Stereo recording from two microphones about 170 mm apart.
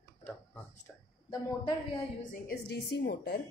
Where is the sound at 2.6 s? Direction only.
75° left (ahead or behind).